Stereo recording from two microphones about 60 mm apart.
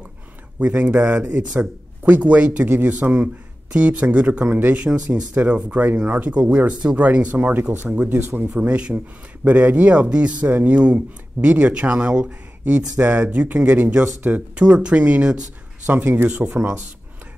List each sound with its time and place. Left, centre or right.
0.6 s speech: right
4.8 s speech: centre; by 8.5 s right
8.5 s speech: centre
15.9 s speech: right
16.5 s speech: right